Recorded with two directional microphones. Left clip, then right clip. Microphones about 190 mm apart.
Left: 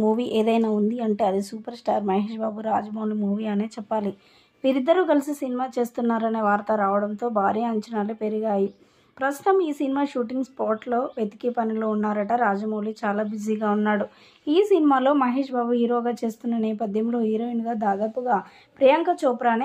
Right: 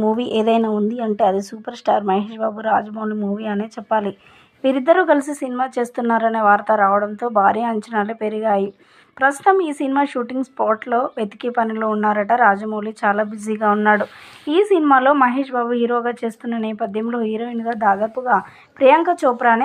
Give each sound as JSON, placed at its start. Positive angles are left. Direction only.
{"t": 0.0, "sound": "speech", "side_deg": -15}
{"t": 17.7, "sound": "a woman's voice", "side_deg": -30}